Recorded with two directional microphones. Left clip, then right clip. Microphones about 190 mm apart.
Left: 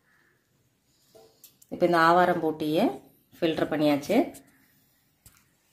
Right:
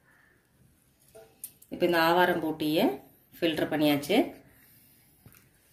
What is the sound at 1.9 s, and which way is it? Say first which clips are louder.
Speech: left 3 dB; 45° left (ahead or behind).